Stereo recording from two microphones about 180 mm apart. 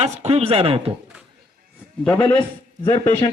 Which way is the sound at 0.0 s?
35° right (ahead or behind).